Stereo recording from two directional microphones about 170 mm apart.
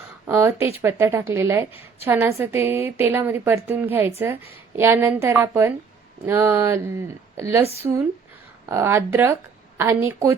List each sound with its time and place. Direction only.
0.3 s a woman's voice: 15° right (ahead or behind)
7.6 s speech: 35° right (ahead or behind)
8.7 s a woman's voice: 15° right (ahead or behind)